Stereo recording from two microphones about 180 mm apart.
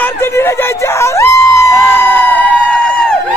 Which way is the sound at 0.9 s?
15° left (ahead or behind).